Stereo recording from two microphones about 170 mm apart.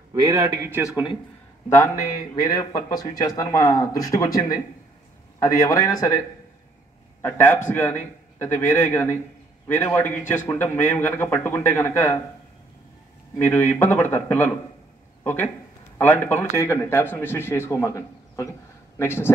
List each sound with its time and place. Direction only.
0.1 s speech: 20° right (ahead or behind)
1.8 s a man's voice: 20° left (ahead or behind)
13.4 s a man's voice: 15° left (ahead or behind)